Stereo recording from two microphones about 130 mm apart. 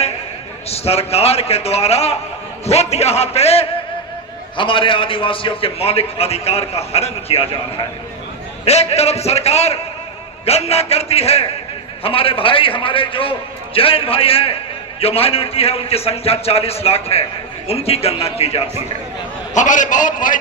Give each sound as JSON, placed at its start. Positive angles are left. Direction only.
{"t": 0.7, "sound": "a man's voice", "side_deg": 50}
{"t": 4.5, "sound": "a man's voice", "side_deg": 40}
{"t": 8.6, "sound": "a man's voice", "side_deg": 55}
{"t": 19.5, "sound": "a man's voice", "side_deg": 75}